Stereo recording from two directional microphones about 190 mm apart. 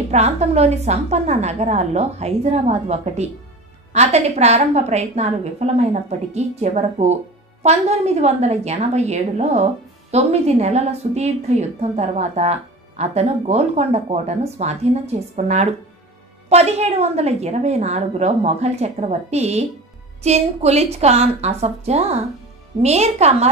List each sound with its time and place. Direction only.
0.1 s a woman's voice: 35° right (ahead or behind)